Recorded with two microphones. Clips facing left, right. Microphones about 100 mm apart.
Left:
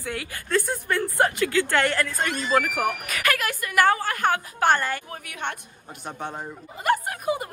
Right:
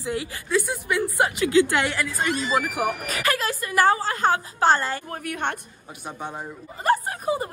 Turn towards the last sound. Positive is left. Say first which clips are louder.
# right 1 dB
turn(degrees=-30)  # may be behind; listen again after turning